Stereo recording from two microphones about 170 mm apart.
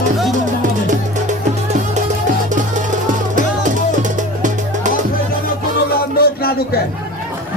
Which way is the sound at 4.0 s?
50° right (ahead or behind).